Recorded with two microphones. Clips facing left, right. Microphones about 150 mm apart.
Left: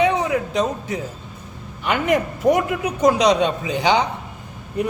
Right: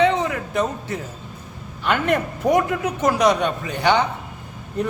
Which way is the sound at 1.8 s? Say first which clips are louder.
Left 1 dB; 10° left (ahead or behind).